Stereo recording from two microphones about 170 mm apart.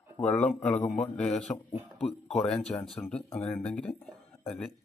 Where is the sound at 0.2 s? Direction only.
10° left (ahead or behind).